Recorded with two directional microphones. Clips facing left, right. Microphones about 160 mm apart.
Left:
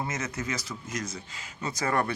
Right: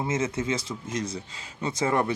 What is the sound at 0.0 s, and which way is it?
Speech, 25° right (ahead or behind).